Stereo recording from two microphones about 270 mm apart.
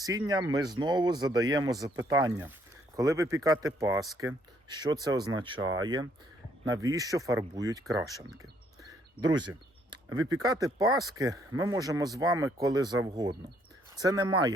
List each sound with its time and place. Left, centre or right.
0.0 s speech: centre
10.2 s speech: centre